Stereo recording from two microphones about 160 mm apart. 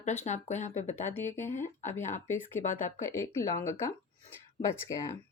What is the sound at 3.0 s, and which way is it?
Speech, 15° left (ahead or behind).